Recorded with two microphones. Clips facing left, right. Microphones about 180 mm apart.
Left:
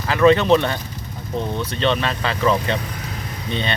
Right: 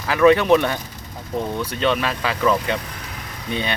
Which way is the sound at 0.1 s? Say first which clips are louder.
Even; 10° right (ahead or behind).